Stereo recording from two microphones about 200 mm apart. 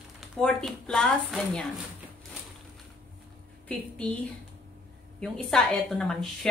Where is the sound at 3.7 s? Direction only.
5° left (ahead or behind).